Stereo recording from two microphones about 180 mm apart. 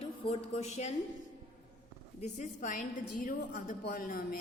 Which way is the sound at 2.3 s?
45° left (ahead or behind).